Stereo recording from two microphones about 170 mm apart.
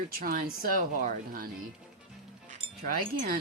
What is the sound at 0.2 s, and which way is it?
Speech, 55° right (ahead or behind).